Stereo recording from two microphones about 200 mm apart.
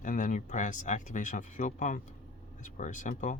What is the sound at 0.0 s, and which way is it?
Speech, 40° left (ahead or behind).